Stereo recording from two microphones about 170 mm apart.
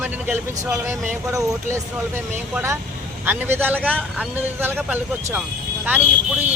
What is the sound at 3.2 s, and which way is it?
Speech, 10° right (ahead or behind).